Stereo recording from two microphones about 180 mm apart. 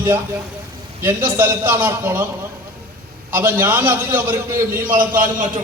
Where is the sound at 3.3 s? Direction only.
10° right (ahead or behind).